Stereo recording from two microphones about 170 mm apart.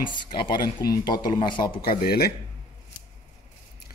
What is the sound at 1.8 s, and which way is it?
Speech, 65° left (ahead or behind).